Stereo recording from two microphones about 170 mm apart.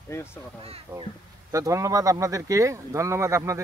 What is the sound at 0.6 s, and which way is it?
Speech, 35° right (ahead or behind).